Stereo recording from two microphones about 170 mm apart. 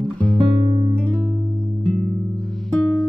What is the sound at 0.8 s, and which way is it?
Music, 15° right (ahead or behind).